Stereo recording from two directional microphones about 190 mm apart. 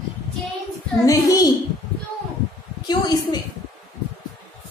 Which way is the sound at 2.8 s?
20° left (ahead or behind).